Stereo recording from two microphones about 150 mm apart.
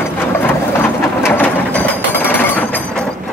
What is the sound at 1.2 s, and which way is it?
Mechanisms, 10° left (ahead or behind).